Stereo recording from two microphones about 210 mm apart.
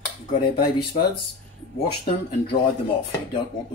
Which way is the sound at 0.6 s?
20° left (ahead or behind).